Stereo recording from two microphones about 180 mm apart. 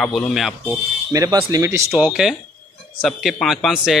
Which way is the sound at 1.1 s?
20° right (ahead or behind).